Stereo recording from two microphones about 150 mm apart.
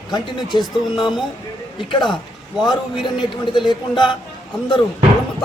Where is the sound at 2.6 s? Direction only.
30° left (ahead or behind).